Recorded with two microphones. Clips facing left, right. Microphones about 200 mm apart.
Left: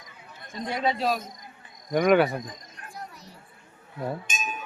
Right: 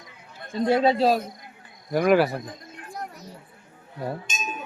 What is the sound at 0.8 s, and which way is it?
Speech, 35° right (ahead or behind).